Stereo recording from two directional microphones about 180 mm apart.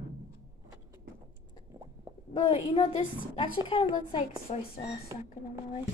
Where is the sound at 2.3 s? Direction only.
30° left (ahead or behind).